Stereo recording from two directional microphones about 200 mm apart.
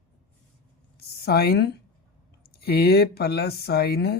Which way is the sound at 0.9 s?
50° left (ahead or behind).